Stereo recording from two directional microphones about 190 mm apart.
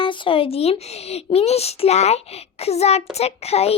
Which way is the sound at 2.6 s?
35° left (ahead or behind).